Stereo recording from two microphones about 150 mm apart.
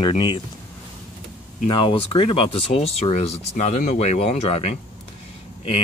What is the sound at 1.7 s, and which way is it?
Speech, 35° left (ahead or behind).